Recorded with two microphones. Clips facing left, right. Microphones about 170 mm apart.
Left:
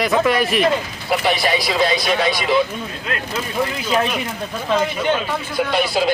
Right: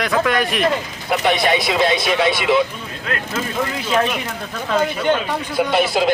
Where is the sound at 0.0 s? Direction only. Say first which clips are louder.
Left 1 dB; 5° left (ahead or behind).